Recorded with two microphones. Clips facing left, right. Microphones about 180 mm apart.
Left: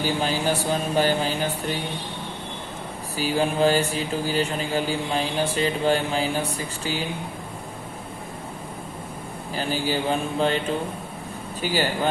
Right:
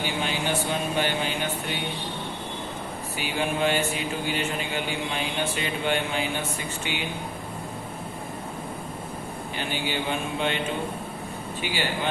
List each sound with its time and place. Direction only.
0.0 s speech: 40° left (ahead or behind)
3.2 s speech: 35° left (ahead or behind)
9.6 s speech: 40° left (ahead or behind)
11.6 s speech: 40° left (ahead or behind)